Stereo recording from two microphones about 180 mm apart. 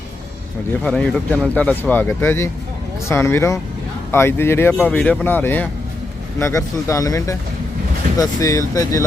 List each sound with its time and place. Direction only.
0.9 s speech: 5° left (ahead or behind)